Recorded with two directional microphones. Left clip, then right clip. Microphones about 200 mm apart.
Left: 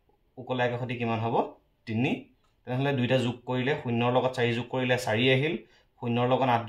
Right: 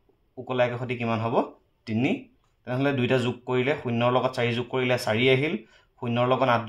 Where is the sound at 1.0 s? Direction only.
45° right (ahead or behind).